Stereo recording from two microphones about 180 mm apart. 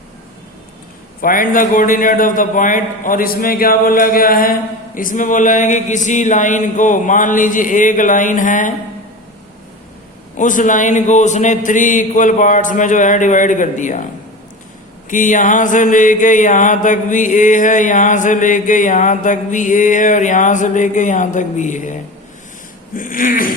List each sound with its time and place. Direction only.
1.2 s mantra: 50° left (ahead or behind)
10.3 s mantra: 45° left (ahead or behind)
15.1 s mantra: 45° left (ahead or behind)
23.0 s mantra: 50° left (ahead or behind)